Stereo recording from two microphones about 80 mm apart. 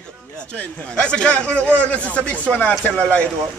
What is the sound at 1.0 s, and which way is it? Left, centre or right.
Speech, centre.